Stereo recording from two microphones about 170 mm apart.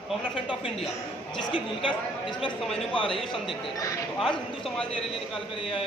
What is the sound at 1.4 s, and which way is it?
Speech, 30° left (ahead or behind).